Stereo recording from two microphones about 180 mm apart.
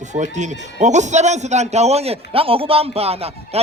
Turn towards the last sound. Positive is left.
turn(degrees=-35)  # may be behind; listen again after turning